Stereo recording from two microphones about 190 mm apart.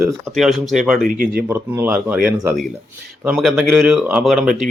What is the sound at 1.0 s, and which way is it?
Speech, 50° right (ahead or behind).